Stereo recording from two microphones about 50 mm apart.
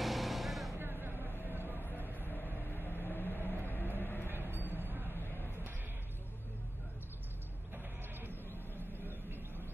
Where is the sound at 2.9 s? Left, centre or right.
Left.